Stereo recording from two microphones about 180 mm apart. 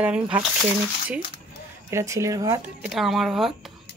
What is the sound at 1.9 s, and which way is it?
Speech, 15° right (ahead or behind).